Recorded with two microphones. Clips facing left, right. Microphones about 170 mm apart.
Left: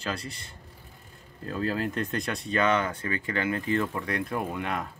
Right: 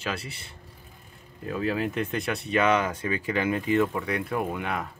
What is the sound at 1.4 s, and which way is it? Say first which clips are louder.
Speech: right 2 dB; 5° right (ahead or behind).